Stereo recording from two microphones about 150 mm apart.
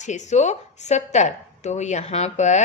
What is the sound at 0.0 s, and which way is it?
A woman's voice, 50° left (ahead or behind).